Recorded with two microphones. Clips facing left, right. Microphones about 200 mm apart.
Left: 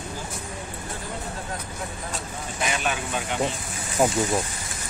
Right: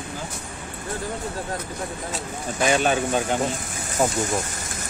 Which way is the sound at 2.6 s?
30° right (ahead or behind).